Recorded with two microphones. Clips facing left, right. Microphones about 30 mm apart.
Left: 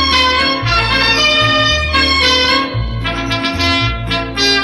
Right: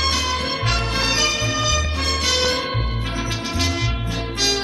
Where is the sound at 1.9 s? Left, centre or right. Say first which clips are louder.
Left 11 dB; left.